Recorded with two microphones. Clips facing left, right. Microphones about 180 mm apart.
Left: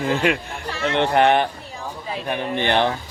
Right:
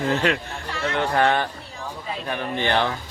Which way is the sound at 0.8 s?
25° left (ahead or behind).